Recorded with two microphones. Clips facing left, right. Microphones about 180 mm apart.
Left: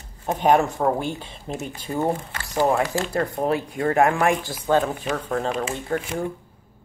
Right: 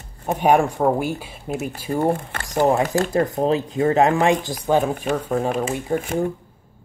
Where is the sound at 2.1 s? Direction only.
55° right (ahead or behind).